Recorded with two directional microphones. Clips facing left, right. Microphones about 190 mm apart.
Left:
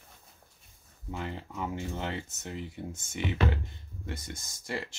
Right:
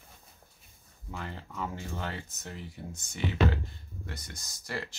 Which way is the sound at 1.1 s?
20° left (ahead or behind).